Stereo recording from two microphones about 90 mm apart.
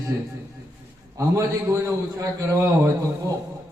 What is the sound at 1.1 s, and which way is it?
A man's voice, 40° right (ahead or behind).